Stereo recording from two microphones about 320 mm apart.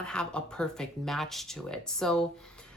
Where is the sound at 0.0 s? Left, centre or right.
Centre.